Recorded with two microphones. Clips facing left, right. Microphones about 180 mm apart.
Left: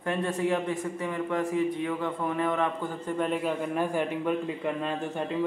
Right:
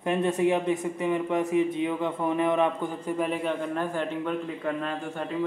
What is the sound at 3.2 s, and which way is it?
A man's voice, centre (ahead or behind).